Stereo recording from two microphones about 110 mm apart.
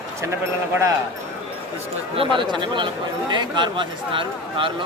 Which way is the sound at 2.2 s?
45° right (ahead or behind).